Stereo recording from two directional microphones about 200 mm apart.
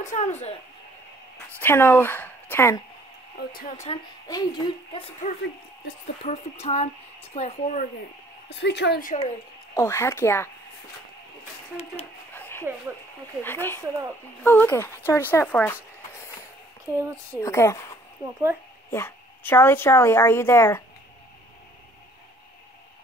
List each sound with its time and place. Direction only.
0.0 s speech: 35° left (ahead or behind)
1.6 s a woman's voice: 10° left (ahead or behind)
3.3 s speech: 45° left (ahead or behind)
4.3 s speech: 20° left (ahead or behind); by 7.9 s 40° left (ahead or behind)
8.5 s a woman's voice: 60° left (ahead or behind)
9.8 s a woman's voice: 15° left (ahead or behind)
12.3 s dog: 10° left (ahead or behind)
13.4 s a woman's voice: 10° left (ahead or behind)
16.9 s speech: 15° right (ahead or behind)
17.4 s a woman's voice: 15° left (ahead or behind)